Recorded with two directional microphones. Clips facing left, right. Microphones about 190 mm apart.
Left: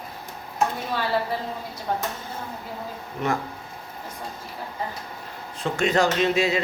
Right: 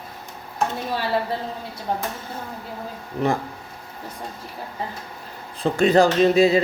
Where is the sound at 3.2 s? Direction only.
35° right (ahead or behind).